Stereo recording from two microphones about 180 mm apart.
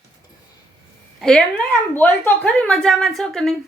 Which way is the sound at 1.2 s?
5° left (ahead or behind).